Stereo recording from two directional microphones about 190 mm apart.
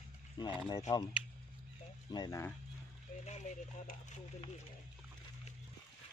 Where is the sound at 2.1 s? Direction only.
20° left (ahead or behind).